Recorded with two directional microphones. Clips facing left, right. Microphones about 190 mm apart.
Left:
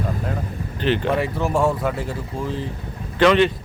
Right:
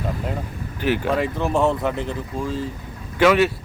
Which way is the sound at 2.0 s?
15° left (ahead or behind).